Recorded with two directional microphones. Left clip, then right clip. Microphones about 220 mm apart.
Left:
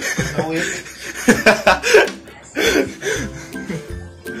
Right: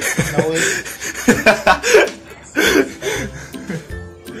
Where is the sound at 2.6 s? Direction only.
20° right (ahead or behind).